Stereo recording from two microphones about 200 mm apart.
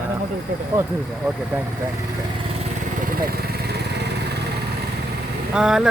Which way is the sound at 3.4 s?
55° right (ahead or behind).